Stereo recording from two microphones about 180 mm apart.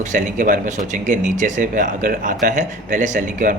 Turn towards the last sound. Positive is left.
turn(degrees=-45)  # may be behind; listen again after turning